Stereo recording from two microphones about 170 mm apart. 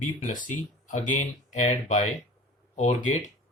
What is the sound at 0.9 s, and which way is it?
Speech, 45° left (ahead or behind).